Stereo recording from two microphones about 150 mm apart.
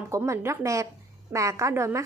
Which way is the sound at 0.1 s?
20° right (ahead or behind).